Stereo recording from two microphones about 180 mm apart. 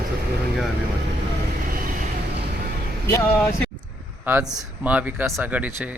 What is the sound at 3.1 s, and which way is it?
Speech, 15° left (ahead or behind).